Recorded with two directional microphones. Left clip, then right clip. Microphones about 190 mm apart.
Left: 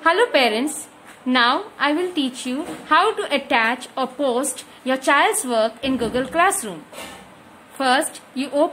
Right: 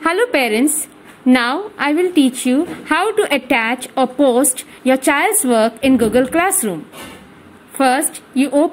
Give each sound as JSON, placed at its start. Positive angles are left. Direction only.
{"t": 0.0, "sound": "a woman's voice", "side_deg": -25}